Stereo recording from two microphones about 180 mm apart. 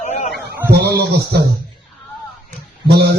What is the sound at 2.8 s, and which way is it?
Speech, 65° right (ahead or behind).